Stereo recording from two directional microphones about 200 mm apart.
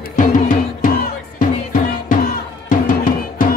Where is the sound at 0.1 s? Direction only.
40° left (ahead or behind).